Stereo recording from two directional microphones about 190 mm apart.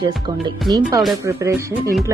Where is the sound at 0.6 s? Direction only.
Centre (ahead or behind).